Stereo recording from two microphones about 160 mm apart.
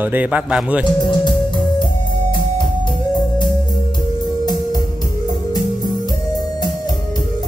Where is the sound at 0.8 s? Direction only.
30° left (ahead or behind).